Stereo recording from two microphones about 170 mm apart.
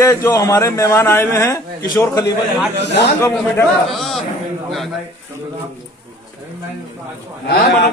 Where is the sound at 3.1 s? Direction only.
15° left (ahead or behind).